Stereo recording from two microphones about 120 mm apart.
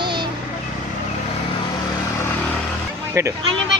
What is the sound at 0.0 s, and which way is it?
Vehicle, 40° right (ahead or behind).